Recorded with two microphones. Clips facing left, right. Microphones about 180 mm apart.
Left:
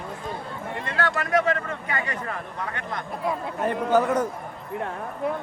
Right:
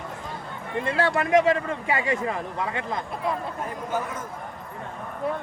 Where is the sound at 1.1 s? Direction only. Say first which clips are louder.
Right 4 dB; 10° right (ahead or behind).